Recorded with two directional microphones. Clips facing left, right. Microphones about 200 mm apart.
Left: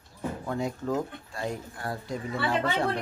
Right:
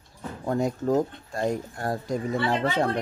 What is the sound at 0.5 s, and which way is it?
Speech, 40° right (ahead or behind).